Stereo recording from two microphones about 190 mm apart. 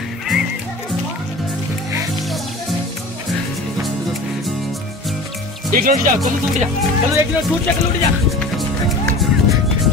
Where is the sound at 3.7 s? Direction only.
Centre (ahead or behind).